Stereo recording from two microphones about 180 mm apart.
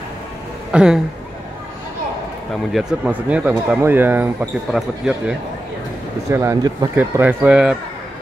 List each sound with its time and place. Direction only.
0.7 s speech: 5° right (ahead or behind)
2.7 s speech: 5° right (ahead or behind)
6.3 s speech: 20° right (ahead or behind)